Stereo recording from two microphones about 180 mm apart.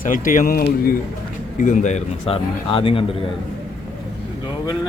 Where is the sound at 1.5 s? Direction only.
45° left (ahead or behind).